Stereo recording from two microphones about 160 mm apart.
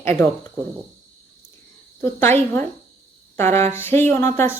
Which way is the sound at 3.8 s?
15° left (ahead or behind).